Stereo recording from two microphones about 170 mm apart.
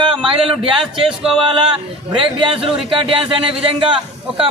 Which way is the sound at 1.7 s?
30° right (ahead or behind).